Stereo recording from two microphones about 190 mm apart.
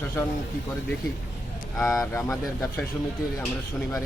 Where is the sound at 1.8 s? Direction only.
15° left (ahead or behind).